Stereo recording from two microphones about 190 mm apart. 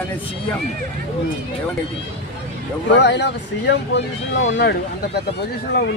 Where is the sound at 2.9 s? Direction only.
65° left (ahead or behind).